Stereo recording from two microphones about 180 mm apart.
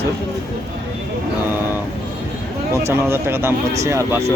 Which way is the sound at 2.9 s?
15° right (ahead or behind).